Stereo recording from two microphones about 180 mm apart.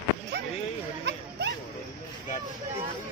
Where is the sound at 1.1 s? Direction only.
70° right (ahead or behind).